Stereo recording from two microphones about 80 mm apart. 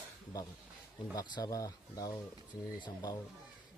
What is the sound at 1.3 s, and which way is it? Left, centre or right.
Speech, left.